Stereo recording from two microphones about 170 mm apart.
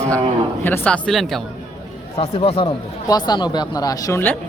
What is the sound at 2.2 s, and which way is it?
Speech, 35° left (ahead or behind).